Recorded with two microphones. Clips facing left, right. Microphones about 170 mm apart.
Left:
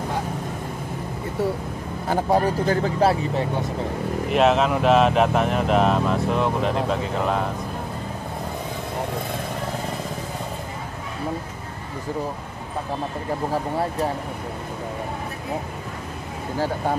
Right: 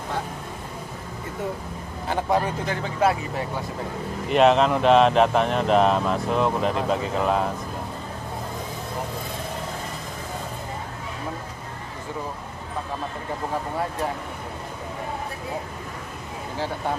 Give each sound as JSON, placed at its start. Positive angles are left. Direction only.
{"t": 2.0, "sound": "speech", "side_deg": 35}
{"t": 4.3, "sound": "speech", "side_deg": 0}